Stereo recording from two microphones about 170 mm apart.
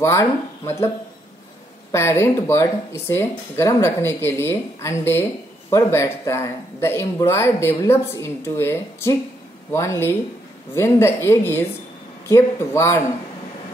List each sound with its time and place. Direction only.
0.0 s speech: 15° left (ahead or behind)
1.9 s speech: 15° left (ahead or behind)